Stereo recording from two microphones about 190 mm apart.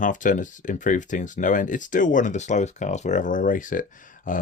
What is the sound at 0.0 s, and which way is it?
Speech, 40° left (ahead or behind).